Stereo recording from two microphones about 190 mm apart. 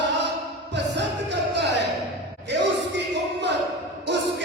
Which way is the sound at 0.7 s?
65° right (ahead or behind).